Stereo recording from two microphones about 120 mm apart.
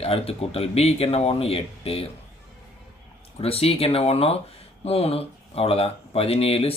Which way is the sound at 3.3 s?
55° left (ahead or behind).